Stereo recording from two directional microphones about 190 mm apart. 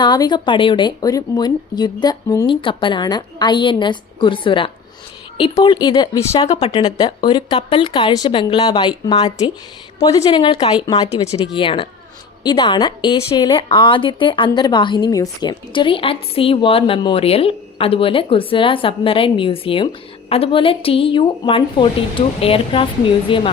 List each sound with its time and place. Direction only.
0.0 s speech: 25° left (ahead or behind)
6.5 s speech: 35° left (ahead or behind)
11.1 s speech: 35° left (ahead or behind)